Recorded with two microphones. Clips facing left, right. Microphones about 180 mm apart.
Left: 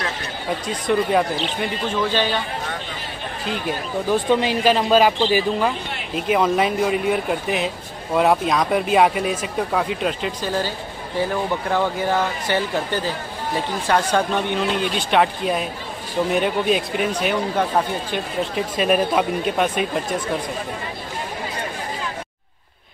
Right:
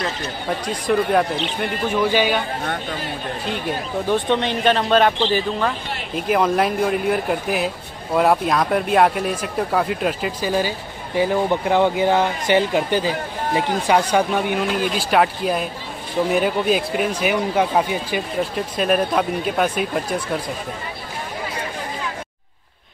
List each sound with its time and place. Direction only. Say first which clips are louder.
0.7 s speech: right 1 dB; centre (ahead or behind)
1.9 s speech: right 4 dB; 10° right (ahead or behind)
3.4 s speech: left 1 dB; centre (ahead or behind)
11.1 s speech: right 4 dB; 15° right (ahead or behind); by 19.9 s centre (ahead or behind)